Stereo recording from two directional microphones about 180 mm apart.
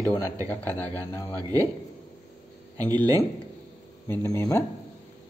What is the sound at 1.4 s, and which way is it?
Speech, 20° right (ahead or behind).